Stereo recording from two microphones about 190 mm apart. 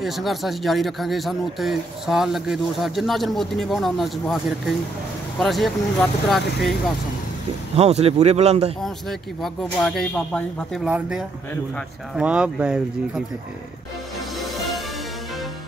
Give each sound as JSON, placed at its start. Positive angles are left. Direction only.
{"t": 0.0, "sound": "speech", "side_deg": 0}
{"t": 7.7, "sound": "speech", "side_deg": -35}
{"t": 9.4, "sound": "speech", "side_deg": 0}